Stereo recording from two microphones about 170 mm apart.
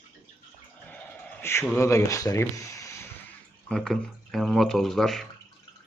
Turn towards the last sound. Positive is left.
turn(degrees=0)  # may be behind; listen again after turning